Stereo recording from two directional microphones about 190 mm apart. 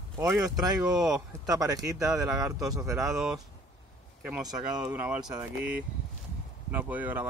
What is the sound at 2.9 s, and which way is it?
Speech, centre (ahead or behind).